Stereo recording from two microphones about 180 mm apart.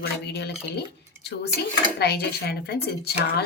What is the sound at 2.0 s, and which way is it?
A woman's voice, 65° left (ahead or behind).